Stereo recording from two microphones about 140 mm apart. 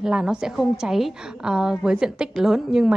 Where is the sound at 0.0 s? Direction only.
5° right (ahead or behind).